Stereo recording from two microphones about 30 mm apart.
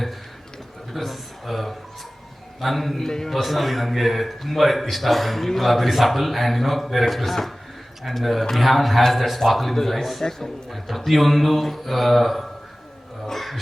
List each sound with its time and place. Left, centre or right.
0.9 s a man's voice: centre
3.0 s a man's voice: centre
3.4 s a man's voice: centre
9.0 s a man's voice: centre
9.5 s a man's voice: centre